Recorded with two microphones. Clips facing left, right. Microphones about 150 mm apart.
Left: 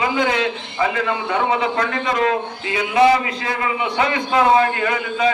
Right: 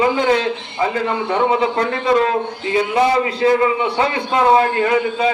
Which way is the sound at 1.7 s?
30° right (ahead or behind).